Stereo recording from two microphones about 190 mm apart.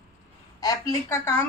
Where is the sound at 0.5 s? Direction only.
20° left (ahead or behind).